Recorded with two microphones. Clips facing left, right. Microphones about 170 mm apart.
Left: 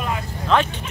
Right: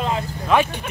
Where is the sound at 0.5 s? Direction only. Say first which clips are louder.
Right 1 dB; 10° right (ahead or behind).